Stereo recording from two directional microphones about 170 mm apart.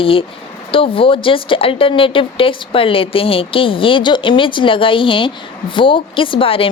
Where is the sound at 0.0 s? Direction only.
30° left (ahead or behind).